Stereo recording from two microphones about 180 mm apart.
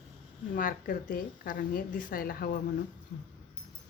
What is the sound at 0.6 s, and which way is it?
A woman's voice, 50° left (ahead or behind).